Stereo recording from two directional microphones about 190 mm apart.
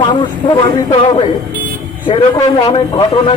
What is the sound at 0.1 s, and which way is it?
Vehicle, 25° left (ahead or behind).